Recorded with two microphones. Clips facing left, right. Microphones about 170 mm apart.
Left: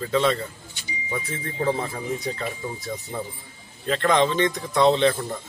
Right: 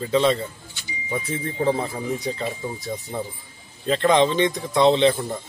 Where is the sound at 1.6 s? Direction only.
15° right (ahead or behind).